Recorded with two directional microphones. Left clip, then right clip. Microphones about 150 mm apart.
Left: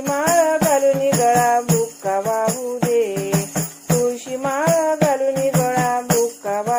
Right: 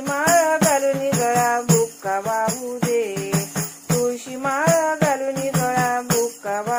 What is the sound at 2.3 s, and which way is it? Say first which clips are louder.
Music: left 2 dB; 50° left (ahead or behind).